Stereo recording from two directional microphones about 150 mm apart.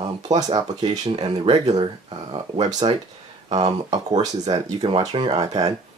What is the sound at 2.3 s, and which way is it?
Speech, 30° right (ahead or behind).